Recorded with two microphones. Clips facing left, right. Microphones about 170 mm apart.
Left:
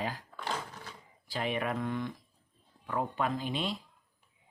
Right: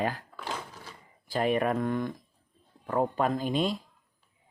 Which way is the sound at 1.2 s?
45° right (ahead or behind).